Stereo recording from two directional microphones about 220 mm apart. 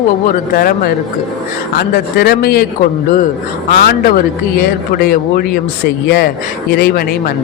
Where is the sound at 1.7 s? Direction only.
45° left (ahead or behind).